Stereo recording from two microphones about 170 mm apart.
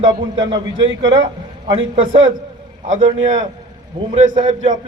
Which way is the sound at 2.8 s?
45° right (ahead or behind).